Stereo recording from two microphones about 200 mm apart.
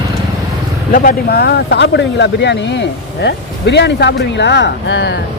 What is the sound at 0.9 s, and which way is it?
Speech, 45° left (ahead or behind).